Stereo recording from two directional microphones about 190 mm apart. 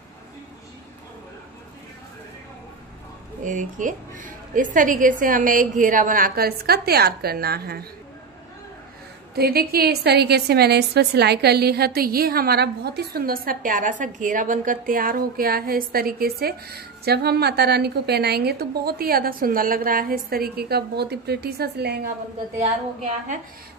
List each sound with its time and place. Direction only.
3.4 s a woman's voice: 40° right (ahead or behind)
9.3 s a woman's voice: 55° right (ahead or behind)
22.6 s a woman's voice: 35° right (ahead or behind)